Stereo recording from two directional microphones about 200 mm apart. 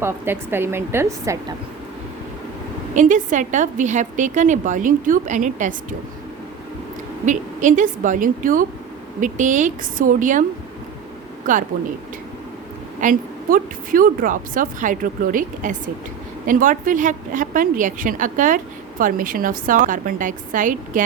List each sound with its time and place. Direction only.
0.0 s a woman's voice: 10° right (ahead or behind)
2.9 s a woman's voice: 40° right (ahead or behind)
7.3 s a woman's voice: 40° right (ahead or behind)
11.5 s a woman's voice: 40° right (ahead or behind)
13.0 s a woman's voice: 40° right (ahead or behind)